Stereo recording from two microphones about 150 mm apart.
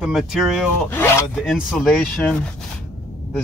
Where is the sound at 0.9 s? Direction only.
15° left (ahead or behind).